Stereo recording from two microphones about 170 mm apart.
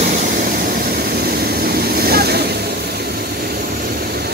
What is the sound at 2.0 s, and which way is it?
Vehicle, 65° right (ahead or behind).